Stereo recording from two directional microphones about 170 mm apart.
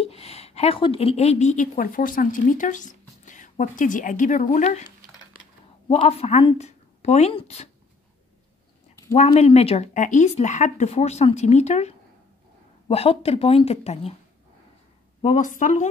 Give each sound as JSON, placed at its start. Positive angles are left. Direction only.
{"t": 0.0, "sound": "speech", "side_deg": 35}
{"t": 5.9, "sound": "speech", "side_deg": 35}
{"t": 9.1, "sound": "speech", "side_deg": 40}
{"t": 15.2, "sound": "a woman's voice", "side_deg": 50}